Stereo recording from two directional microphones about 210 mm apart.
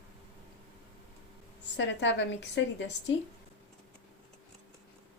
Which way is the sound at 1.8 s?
60° left (ahead or behind).